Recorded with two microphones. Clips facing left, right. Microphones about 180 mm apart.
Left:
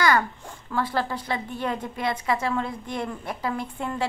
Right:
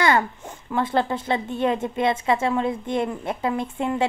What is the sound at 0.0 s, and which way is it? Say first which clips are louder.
A woman's voice: right 2 dB; 25° right (ahead or behind).